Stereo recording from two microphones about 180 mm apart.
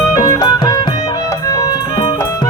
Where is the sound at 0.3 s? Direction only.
20° left (ahead or behind).